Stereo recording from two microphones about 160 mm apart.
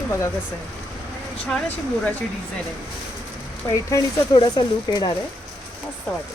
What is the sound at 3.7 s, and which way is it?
Speech, 20° left (ahead or behind).